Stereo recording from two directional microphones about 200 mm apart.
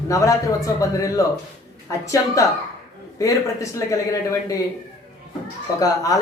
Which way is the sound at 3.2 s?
15° left (ahead or behind).